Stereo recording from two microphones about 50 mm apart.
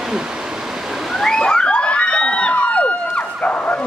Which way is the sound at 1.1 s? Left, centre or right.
Centre.